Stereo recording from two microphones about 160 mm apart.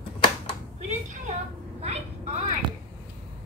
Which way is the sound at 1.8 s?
45° right (ahead or behind).